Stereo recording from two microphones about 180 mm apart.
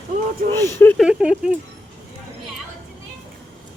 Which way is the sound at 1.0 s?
5° right (ahead or behind).